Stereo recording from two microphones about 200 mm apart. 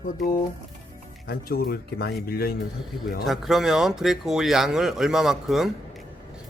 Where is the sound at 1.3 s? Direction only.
50° left (ahead or behind).